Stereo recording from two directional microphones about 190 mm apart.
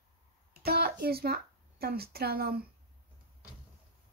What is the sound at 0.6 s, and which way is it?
Speech, 55° right (ahead or behind).